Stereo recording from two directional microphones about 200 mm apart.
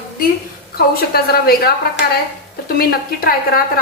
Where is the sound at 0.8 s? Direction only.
50° left (ahead or behind).